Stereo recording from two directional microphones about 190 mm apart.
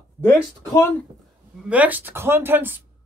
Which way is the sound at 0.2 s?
10° left (ahead or behind).